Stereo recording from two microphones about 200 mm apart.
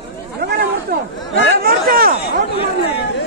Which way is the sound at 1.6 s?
50° right (ahead or behind).